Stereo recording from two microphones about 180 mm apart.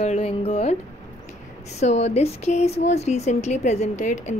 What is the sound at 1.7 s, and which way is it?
Speech, 35° left (ahead or behind).